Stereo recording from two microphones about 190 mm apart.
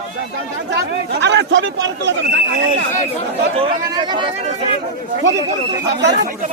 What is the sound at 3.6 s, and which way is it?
Speech, 30° right (ahead or behind).